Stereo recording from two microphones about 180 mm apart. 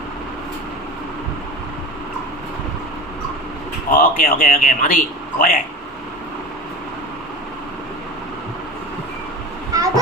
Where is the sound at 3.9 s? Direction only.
55° left (ahead or behind).